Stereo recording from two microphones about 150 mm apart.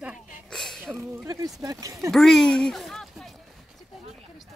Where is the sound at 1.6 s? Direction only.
20° right (ahead or behind).